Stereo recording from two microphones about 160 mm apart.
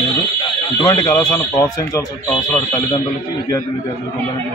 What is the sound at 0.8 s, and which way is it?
Speech, 25° left (ahead or behind).